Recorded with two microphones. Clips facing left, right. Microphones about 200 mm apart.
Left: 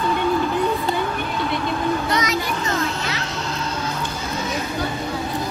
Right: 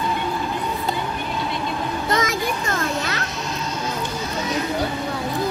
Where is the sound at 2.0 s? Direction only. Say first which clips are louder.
Even; 50° right (ahead or behind).